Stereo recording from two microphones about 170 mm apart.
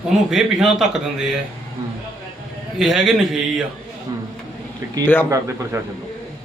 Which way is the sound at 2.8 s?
Centre (ahead or behind).